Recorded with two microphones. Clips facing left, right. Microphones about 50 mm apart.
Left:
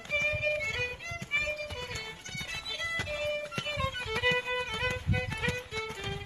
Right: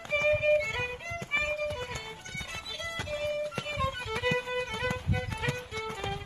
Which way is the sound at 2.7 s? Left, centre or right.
Centre.